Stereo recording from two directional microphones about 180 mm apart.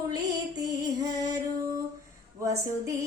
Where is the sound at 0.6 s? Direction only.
20° right (ahead or behind).